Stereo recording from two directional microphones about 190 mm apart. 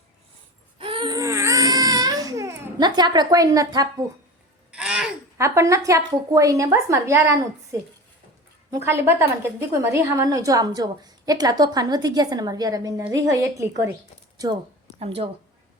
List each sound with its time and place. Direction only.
0.8 s baby cry: 25° right (ahead or behind)
4.7 s a sound: 5° right (ahead or behind)
5.4 s a woman's voice: 15° right (ahead or behind)
14.9 s a woman's voice: 30° right (ahead or behind)